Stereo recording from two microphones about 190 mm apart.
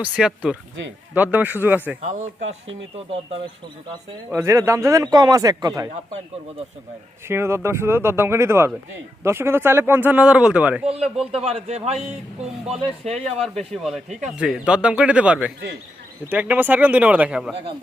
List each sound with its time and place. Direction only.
0.0 s speech: 5° right (ahead or behind)
2.0 s speech: 40° right (ahead or behind)
4.3 s speech: 15° right (ahead or behind)
7.3 s speech: 15° right (ahead or behind)
10.9 s speech: 30° right (ahead or behind)
14.3 s speech: 5° right (ahead or behind)